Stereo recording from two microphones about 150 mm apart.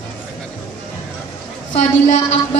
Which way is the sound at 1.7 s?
50° left (ahead or behind).